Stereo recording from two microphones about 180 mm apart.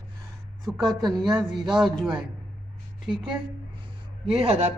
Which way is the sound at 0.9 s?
Centre (ahead or behind).